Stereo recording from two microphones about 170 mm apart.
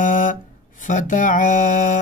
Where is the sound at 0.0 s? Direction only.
50° left (ahead or behind).